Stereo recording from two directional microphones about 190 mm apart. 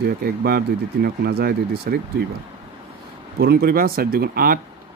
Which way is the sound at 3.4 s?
55° right (ahead or behind).